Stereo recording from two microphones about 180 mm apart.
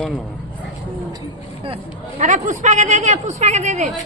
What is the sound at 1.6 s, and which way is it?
Speech, 35° right (ahead or behind).